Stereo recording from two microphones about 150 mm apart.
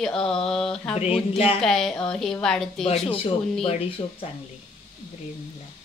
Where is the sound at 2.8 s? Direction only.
40° left (ahead or behind).